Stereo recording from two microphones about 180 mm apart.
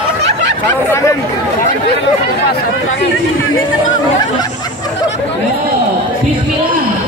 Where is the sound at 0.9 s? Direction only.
15° left (ahead or behind).